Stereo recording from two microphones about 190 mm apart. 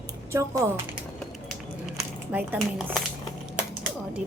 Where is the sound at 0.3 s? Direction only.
15° right (ahead or behind).